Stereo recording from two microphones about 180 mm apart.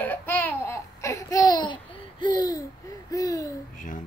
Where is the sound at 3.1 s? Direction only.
20° left (ahead or behind).